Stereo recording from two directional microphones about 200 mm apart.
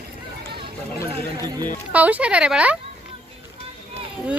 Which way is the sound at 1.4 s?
20° right (ahead or behind).